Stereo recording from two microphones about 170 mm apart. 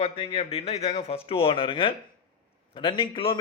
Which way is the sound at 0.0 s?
35° left (ahead or behind).